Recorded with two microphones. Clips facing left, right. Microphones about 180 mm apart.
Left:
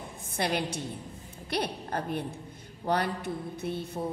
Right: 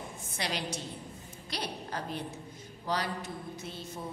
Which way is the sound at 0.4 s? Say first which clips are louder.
Left 6 dB; 55° left (ahead or behind).